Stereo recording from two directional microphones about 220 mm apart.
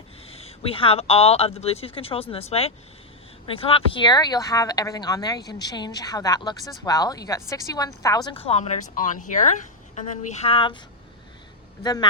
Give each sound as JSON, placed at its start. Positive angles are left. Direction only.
{"t": 0.3, "sound": "speech", "side_deg": 25}
{"t": 11.8, "sound": "speech", "side_deg": 20}